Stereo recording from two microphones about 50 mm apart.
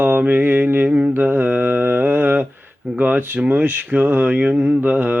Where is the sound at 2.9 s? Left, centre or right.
Right.